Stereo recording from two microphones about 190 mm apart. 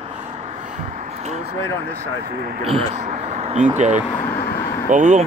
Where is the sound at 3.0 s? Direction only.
40° right (ahead or behind).